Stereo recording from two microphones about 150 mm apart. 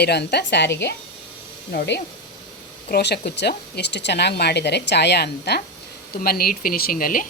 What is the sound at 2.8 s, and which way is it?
Speech, 90° left.